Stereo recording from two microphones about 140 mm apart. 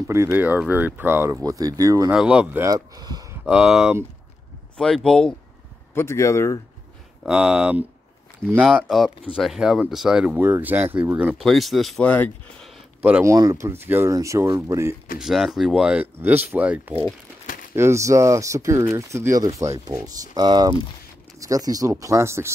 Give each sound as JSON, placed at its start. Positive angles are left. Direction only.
{"t": 0.1, "sound": "speech", "side_deg": -15}
{"t": 2.1, "sound": "speech", "side_deg": -5}
{"t": 2.6, "sound": "speech", "side_deg": -25}
{"t": 3.4, "sound": "speech", "side_deg": -5}
{"t": 5.9, "sound": "speech", "side_deg": 20}
{"t": 7.2, "sound": "speech", "side_deg": -5}
{"t": 11.4, "sound": "speech", "side_deg": 0}
{"t": 13.2, "sound": "speech", "side_deg": -20}
{"t": 15.1, "sound": "speech", "side_deg": -5}